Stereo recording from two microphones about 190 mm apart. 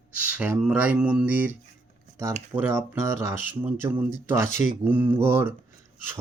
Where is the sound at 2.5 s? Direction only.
15° right (ahead or behind).